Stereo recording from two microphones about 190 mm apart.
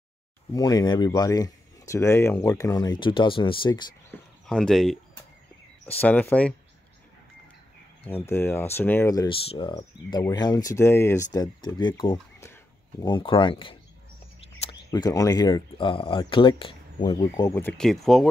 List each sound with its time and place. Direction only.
0.6 s speech: 20° left (ahead or behind)
4.5 s speech: 5° left (ahead or behind)
8.0 s speech: 10° left (ahead or behind)
9.5 s speech: 30° left (ahead or behind)
13.0 s speech: 25° left (ahead or behind)
14.9 s speech: 20° left (ahead or behind); by 18.3 s centre (ahead or behind)